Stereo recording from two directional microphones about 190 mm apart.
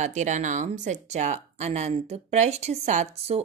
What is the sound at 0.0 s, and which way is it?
A woman's voice, 40° right (ahead or behind).